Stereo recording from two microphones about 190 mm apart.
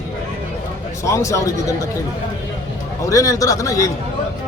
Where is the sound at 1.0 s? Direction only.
15° left (ahead or behind).